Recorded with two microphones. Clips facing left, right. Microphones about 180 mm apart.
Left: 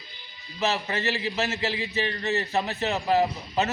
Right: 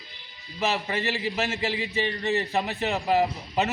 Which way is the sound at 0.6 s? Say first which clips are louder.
Even; 15° right (ahead or behind).